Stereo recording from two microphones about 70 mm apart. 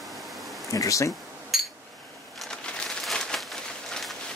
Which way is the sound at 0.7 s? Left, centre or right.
Left.